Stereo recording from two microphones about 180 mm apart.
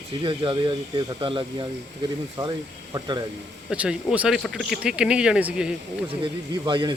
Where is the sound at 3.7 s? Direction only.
5° right (ahead or behind).